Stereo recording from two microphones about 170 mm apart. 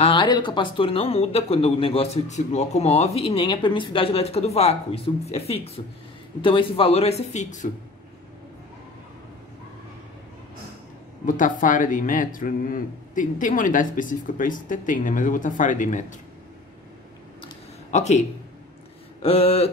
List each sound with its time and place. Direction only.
0.0 s speech: 30° left (ahead or behind); by 7.7 s 45° left (ahead or behind)
11.2 s a man's voice: 50° left (ahead or behind)
17.9 s speech: 40° left (ahead or behind)
19.2 s speech: 35° left (ahead or behind)